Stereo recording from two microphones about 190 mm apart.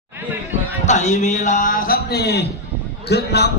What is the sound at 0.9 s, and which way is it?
A man's voice, 40° left (ahead or behind).